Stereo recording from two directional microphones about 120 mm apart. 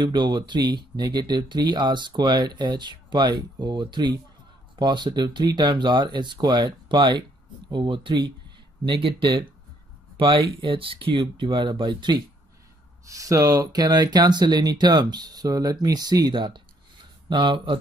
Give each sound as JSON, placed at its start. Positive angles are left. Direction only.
{"t": 0.0, "sound": "speech", "side_deg": -40}
{"t": 13.0, "sound": "speech", "side_deg": -25}